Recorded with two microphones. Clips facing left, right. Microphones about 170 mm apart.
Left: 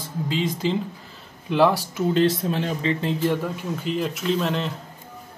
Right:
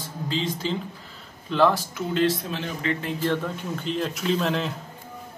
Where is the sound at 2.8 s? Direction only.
25° left (ahead or behind).